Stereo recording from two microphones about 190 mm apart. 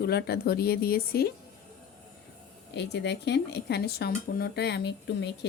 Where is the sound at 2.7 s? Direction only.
65° left (ahead or behind).